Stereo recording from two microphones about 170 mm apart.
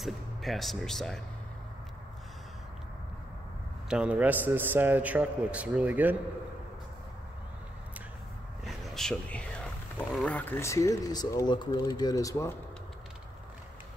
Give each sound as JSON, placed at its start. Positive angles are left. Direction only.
{"t": 0.0, "sound": "speech", "side_deg": 0}
{"t": 3.9, "sound": "a man's voice", "side_deg": -5}
{"t": 8.6, "sound": "a sound", "side_deg": 0}
{"t": 9.9, "sound": "speech", "side_deg": 10}